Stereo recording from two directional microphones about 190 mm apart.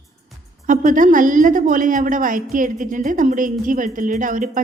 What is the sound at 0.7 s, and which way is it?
A woman's voice, 45° right (ahead or behind).